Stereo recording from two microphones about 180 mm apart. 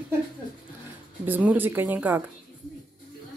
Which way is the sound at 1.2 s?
10° right (ahead or behind).